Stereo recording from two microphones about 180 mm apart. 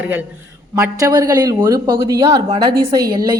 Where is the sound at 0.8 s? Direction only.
20° right (ahead or behind).